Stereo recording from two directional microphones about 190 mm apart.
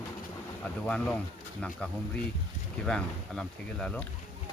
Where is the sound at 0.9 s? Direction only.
5° left (ahead or behind).